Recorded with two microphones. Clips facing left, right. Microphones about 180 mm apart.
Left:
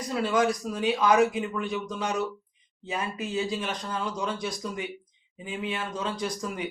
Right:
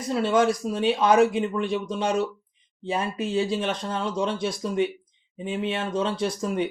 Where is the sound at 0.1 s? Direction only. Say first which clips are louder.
Right 4 dB; 25° right (ahead or behind).